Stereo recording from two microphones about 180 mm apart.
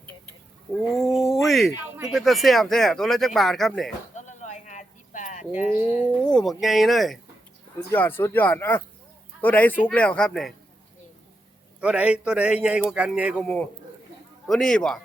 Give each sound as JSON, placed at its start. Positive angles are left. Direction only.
{"t": 0.9, "sound": "a sound", "side_deg": 0}
{"t": 1.5, "sound": "speech", "side_deg": 0}
{"t": 4.1, "sound": "a sound", "side_deg": 40}
{"t": 6.2, "sound": "speech", "side_deg": 0}
{"t": 7.9, "sound": "a man's voice", "side_deg": 10}
{"t": 11.8, "sound": "speech", "side_deg": -5}
{"t": 13.4, "sound": "a man's voice", "side_deg": 10}